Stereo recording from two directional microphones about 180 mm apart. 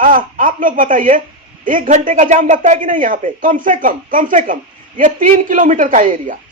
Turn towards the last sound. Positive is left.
turn(degrees=-45)  # may be behind; listen again after turning